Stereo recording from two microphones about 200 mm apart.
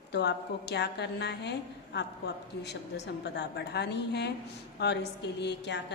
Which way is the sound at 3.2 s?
60° left (ahead or behind).